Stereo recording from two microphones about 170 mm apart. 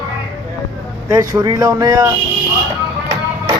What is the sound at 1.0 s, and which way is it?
Speech, 25° right (ahead or behind).